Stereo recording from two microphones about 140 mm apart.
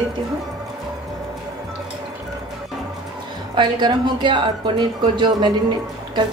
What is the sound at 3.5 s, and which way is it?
Speech, 35° right (ahead or behind).